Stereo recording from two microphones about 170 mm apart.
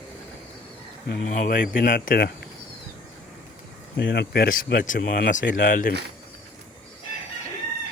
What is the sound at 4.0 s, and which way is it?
Speech, 80° left.